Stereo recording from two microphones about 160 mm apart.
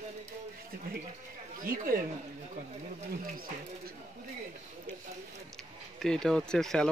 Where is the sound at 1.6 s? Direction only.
60° right (ahead or behind).